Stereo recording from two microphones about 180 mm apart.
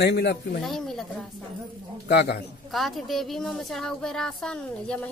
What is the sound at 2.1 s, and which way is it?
Speech, 70° left (ahead or behind).